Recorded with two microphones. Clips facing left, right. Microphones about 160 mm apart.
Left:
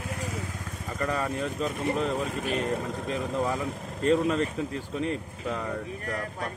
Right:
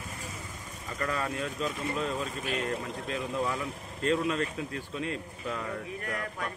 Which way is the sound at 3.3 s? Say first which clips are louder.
Left 3 dB; 45° left (ahead or behind).